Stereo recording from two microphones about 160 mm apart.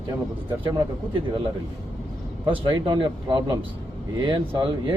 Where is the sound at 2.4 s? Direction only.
30° right (ahead or behind).